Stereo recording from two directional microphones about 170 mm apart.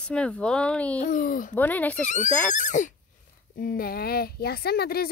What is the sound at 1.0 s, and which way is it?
Speech, 55° left (ahead or behind).